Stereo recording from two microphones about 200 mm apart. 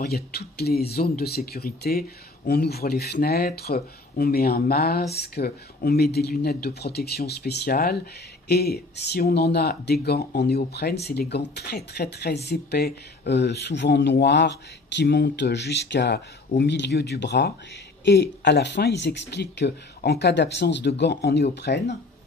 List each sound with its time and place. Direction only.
0.0 s speech: 50° left (ahead or behind)